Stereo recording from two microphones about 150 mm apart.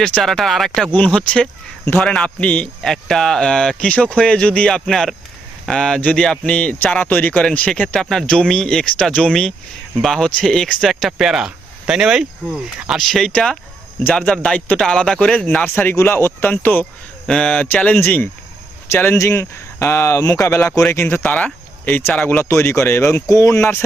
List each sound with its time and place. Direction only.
0.0 s speech: 5° left (ahead or behind); by 23.6 s 20° left (ahead or behind)